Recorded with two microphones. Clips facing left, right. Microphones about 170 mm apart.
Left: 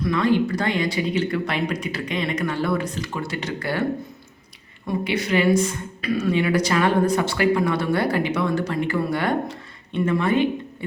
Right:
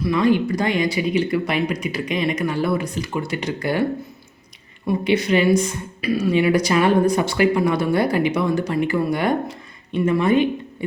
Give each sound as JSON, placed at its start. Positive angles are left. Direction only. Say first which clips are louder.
{"t": 0.0, "sound": "speech", "louder": "right 2 dB", "side_deg": -15}
{"t": 5.0, "sound": "speech", "louder": "right 3 dB", "side_deg": -20}